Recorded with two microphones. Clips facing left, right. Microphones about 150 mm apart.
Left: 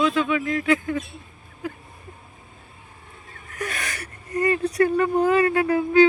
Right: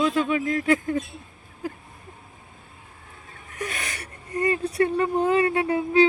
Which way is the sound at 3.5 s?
25° right (ahead or behind).